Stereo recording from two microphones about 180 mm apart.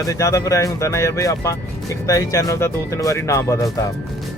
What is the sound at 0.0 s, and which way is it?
Speech, 20° left (ahead or behind).